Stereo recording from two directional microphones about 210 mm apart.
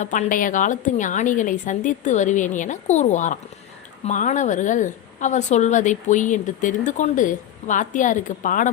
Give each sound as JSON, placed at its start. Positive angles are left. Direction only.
{"t": 0.0, "sound": "a woman's voice", "side_deg": 35}